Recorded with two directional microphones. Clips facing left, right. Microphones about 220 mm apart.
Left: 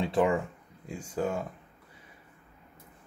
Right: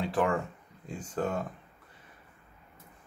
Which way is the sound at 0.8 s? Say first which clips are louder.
Left 1 dB; 10° left (ahead or behind).